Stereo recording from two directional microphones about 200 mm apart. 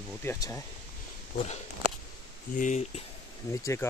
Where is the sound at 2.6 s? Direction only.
35° left (ahead or behind).